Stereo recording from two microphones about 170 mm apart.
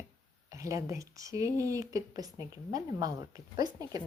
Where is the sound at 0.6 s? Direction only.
20° right (ahead or behind).